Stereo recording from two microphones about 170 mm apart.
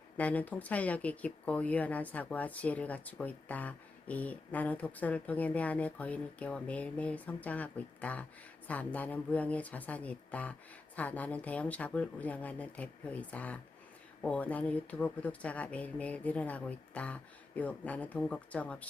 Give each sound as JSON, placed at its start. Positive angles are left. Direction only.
{"t": 0.2, "sound": "speech", "side_deg": 10}